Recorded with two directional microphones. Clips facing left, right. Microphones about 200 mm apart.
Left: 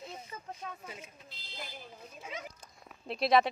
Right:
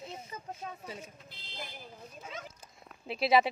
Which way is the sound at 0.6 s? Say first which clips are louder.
Right 2 dB; 35° right (ahead or behind).